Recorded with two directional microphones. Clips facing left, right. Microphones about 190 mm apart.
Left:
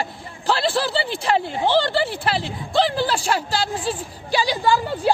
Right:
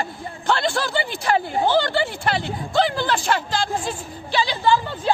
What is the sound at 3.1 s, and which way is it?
Speech, 10° left (ahead or behind).